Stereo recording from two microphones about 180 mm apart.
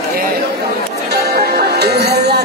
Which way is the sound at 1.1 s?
60° right (ahead or behind).